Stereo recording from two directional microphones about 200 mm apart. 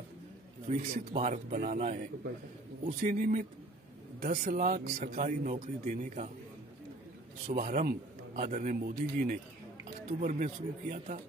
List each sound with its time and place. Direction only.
0.7 s speech: 35° right (ahead or behind)
7.4 s speech: 35° right (ahead or behind)